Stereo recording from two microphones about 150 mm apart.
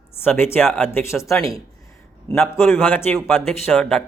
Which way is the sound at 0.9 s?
15° left (ahead or behind).